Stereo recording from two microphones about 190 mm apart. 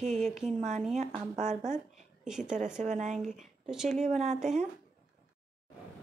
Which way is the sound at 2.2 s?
5° right (ahead or behind).